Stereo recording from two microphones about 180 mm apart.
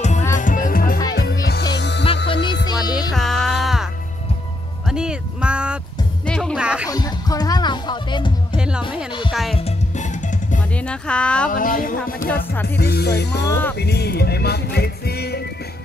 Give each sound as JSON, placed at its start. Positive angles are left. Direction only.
{"t": 0.0, "sound": "music", "side_deg": 40}
{"t": 1.4, "sound": "music", "side_deg": 65}
{"t": 2.7, "sound": "music", "side_deg": 20}
{"t": 3.2, "sound": "music", "side_deg": 0}
{"t": 6.9, "sound": "music", "side_deg": 20}
{"t": 8.5, "sound": "music", "side_deg": -5}
{"t": 9.6, "sound": "music", "side_deg": 40}
{"t": 10.7, "sound": "music", "side_deg": 5}
{"t": 11.5, "sound": "a sound", "side_deg": 50}
{"t": 12.6, "sound": "music", "side_deg": 65}
{"t": 13.5, "sound": "speech", "side_deg": 10}
{"t": 13.7, "sound": "music", "side_deg": 65}